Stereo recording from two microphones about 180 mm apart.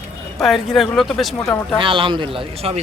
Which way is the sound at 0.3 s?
Centre (ahead or behind).